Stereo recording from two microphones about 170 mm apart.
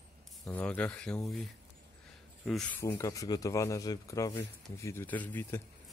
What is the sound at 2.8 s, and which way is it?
A man's voice, 15° left (ahead or behind).